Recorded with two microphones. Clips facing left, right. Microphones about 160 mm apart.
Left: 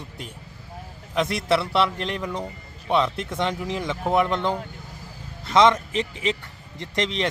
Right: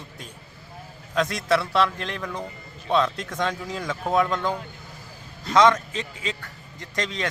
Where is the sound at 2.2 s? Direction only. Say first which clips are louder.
Left 2 dB; 10° left (ahead or behind).